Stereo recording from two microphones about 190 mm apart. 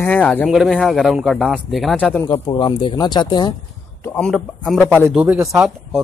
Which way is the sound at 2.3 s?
25° left (ahead or behind).